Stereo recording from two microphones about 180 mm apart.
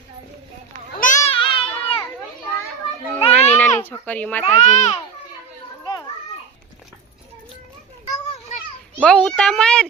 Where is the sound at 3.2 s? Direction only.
35° left (ahead or behind).